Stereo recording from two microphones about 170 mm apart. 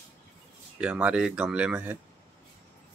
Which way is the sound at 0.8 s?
5° right (ahead or behind).